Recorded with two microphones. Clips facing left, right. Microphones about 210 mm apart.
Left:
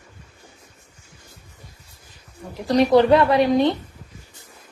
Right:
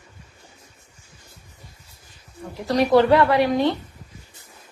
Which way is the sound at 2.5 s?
15° left (ahead or behind).